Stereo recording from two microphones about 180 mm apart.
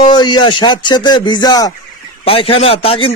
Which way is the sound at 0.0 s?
25° left (ahead or behind).